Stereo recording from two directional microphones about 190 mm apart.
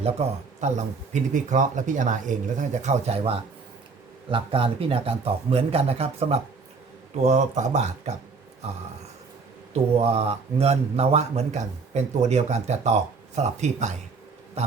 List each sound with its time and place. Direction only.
0.0 s speech: 35° right (ahead or behind)
10.0 s speech: 30° right (ahead or behind)